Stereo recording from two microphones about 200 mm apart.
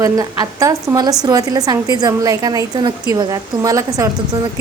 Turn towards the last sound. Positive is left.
turn(degrees=-15)  # may be behind; listen again after turning